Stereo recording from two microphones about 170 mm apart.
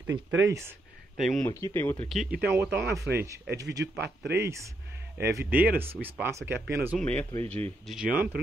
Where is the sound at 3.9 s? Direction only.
80° right.